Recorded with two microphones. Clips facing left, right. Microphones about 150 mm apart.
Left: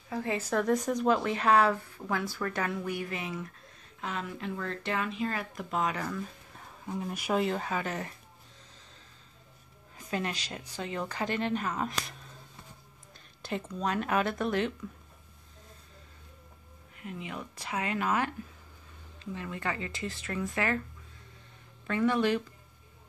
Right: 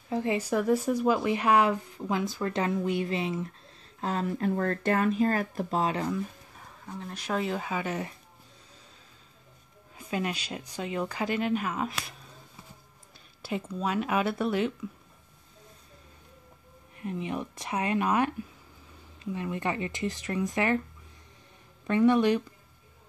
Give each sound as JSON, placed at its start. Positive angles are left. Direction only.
{"t": 0.1, "sound": "speech", "side_deg": -20}
{"t": 4.0, "sound": "speech", "side_deg": -40}
{"t": 6.9, "sound": "speech", "side_deg": 10}
{"t": 7.4, "sound": "speech", "side_deg": -5}
{"t": 9.9, "sound": "speech", "side_deg": -15}
{"t": 13.4, "sound": "speech", "side_deg": -10}
{"t": 16.9, "sound": "speech", "side_deg": -25}
{"t": 19.3, "sound": "speech", "side_deg": -20}
{"t": 21.8, "sound": "speech", "side_deg": -20}